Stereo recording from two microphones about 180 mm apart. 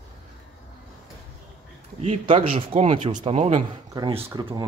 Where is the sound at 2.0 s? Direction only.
30° right (ahead or behind).